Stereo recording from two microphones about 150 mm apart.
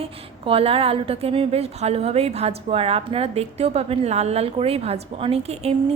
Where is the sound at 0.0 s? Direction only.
40° right (ahead or behind).